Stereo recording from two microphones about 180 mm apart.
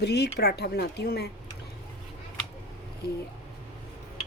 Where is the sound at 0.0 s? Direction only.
65° left (ahead or behind).